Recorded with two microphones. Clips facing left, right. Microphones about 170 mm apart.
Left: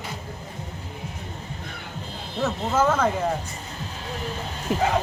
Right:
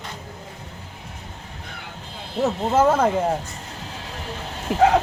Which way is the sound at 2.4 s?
30° right (ahead or behind).